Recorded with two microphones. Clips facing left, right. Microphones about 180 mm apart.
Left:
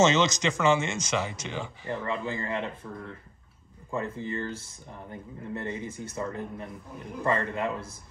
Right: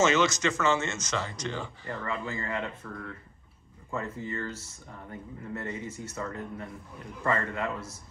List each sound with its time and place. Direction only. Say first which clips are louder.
0.0 s speech: left 2 dB; 20° left (ahead or behind)
1.9 s speech: left 4 dB; 20° left (ahead or behind)
3.9 s speech: left 2 dB; 25° left (ahead or behind)